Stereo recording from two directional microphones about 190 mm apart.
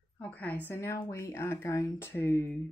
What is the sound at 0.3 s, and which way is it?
A woman's voice, 10° left (ahead or behind).